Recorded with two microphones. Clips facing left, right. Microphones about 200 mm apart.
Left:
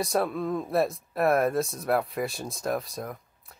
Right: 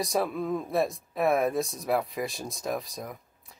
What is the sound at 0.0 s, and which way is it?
Speech, centre (ahead or behind).